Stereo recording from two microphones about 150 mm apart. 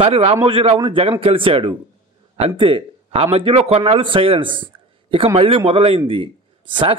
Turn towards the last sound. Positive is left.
turn(degrees=-35)  # may be behind; listen again after turning